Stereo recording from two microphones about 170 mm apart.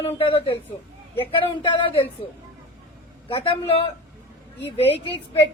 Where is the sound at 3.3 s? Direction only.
35° left (ahead or behind).